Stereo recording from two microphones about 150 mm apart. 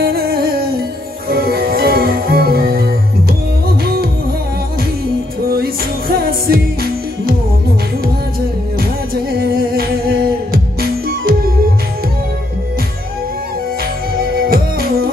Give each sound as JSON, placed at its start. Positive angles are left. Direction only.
{"t": 0.0, "sound": "music", "side_deg": -85}
{"t": 5.5, "sound": "music", "side_deg": -90}
{"t": 8.7, "sound": "music", "side_deg": -85}
{"t": 14.1, "sound": "music", "side_deg": -80}